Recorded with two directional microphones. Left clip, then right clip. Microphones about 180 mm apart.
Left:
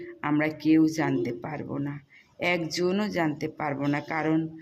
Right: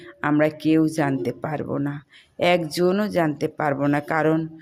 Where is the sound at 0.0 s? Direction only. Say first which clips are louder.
Right 6 dB; 20° right (ahead or behind).